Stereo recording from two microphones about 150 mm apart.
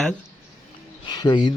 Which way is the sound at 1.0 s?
30° left (ahead or behind).